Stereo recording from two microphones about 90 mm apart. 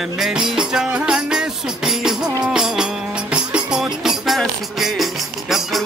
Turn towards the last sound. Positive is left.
turn(degrees=0)  # may be behind; listen again after turning